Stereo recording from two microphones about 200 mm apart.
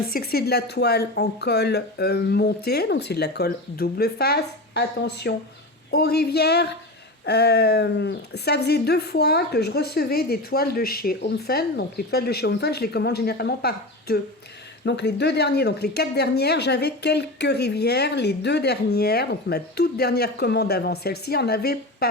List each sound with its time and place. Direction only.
0.1 s a woman's voice: 50° left (ahead or behind)